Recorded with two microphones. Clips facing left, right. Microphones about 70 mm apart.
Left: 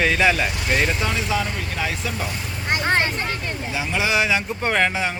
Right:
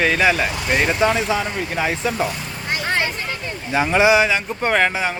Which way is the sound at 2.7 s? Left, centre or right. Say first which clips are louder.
Left 1 dB; left.